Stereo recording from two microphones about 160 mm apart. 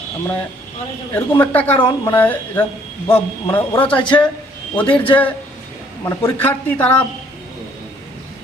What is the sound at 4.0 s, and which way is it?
Speech, 30° left (ahead or behind).